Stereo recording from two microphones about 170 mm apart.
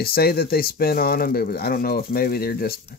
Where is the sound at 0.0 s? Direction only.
65° left (ahead or behind).